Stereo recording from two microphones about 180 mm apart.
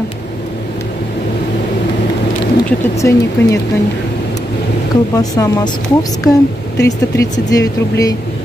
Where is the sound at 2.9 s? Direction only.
15° left (ahead or behind).